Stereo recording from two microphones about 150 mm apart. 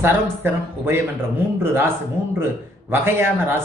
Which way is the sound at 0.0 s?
15° right (ahead or behind).